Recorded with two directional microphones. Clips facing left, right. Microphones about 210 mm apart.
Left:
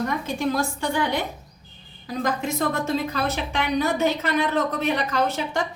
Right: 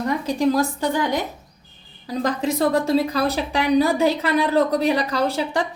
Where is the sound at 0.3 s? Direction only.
35° right (ahead or behind).